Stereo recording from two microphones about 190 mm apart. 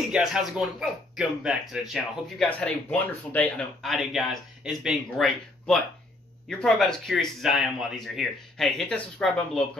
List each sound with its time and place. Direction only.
0.1 s speech: centre (ahead or behind)